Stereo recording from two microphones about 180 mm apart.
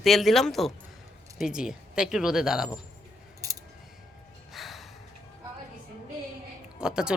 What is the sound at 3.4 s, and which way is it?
Scissors, 20° right (ahead or behind).